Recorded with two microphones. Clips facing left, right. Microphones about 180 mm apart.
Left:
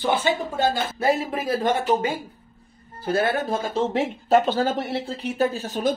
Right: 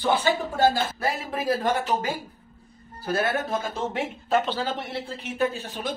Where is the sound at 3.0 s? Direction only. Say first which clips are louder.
Left 3 dB; 30° left (ahead or behind).